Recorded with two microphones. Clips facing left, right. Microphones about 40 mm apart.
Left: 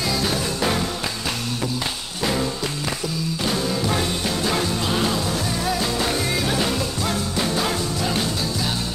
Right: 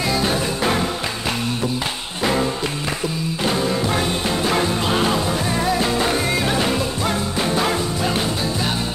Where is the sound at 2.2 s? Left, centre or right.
Right.